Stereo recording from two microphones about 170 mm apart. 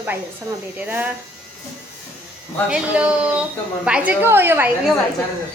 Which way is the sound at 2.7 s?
5° right (ahead or behind).